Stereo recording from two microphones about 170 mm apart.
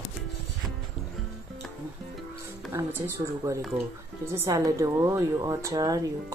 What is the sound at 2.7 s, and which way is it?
Speech, 15° right (ahead or behind).